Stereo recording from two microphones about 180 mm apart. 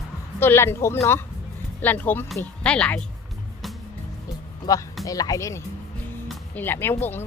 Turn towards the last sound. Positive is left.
turn(degrees=10)  # may be behind; listen again after turning